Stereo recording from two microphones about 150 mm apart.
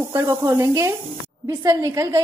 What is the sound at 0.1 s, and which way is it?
A woman's voice, 20° right (ahead or behind).